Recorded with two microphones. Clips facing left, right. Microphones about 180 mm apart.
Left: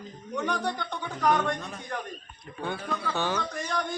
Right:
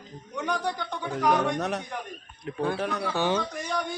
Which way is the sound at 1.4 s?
75° right (ahead or behind).